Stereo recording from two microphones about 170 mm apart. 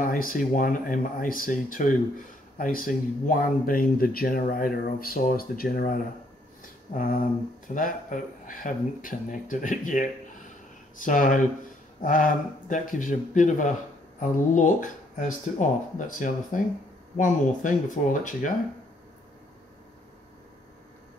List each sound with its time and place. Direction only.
0.0 s speech: 55° left (ahead or behind)
7.0 s speech: 55° left (ahead or behind)